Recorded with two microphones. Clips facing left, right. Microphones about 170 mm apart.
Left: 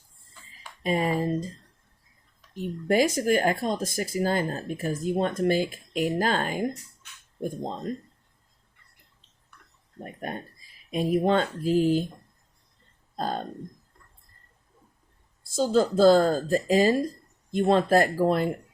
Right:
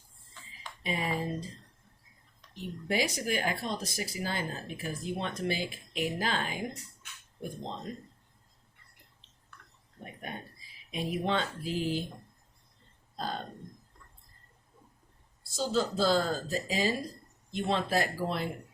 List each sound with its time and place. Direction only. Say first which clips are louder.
0.8 s speech: left 8 dB; 45° left (ahead or behind)
2.6 s speech: left 8 dB; 50° left (ahead or behind)
10.0 s speech: left 7 dB; 45° left (ahead or behind)
13.1 s speech: left 6 dB; 45° left (ahead or behind)
15.4 s speech: left 8 dB; 50° left (ahead or behind)